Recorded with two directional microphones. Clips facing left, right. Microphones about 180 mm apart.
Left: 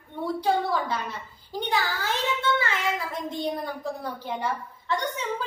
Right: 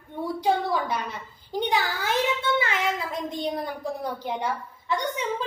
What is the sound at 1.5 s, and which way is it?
A child's voice, 15° right (ahead or behind).